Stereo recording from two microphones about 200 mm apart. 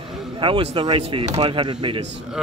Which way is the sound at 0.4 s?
25° right (ahead or behind).